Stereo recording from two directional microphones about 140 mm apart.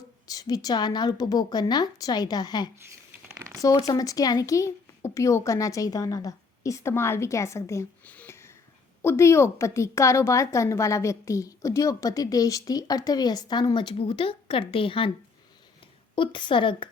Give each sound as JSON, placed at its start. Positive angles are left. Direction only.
{"t": 0.3, "sound": "a woman's voice", "side_deg": 25}
{"t": 3.3, "sound": "a sound", "side_deg": -20}
{"t": 3.6, "sound": "a woman's voice", "side_deg": 25}
{"t": 8.0, "sound": "a sound", "side_deg": 10}
{"t": 9.0, "sound": "a woman's voice", "side_deg": 20}
{"t": 16.1, "sound": "a woman's voice", "side_deg": 35}